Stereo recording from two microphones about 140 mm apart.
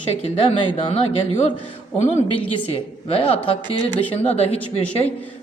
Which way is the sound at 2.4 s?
40° left (ahead or behind).